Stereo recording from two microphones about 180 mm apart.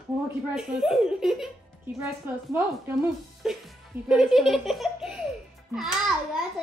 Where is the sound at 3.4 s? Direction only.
Centre (ahead or behind).